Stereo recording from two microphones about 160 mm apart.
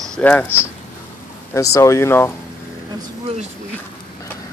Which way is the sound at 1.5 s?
20° left (ahead or behind).